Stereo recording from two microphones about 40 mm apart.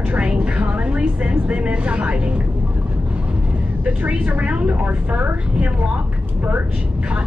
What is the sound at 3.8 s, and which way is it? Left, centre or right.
Speech, right.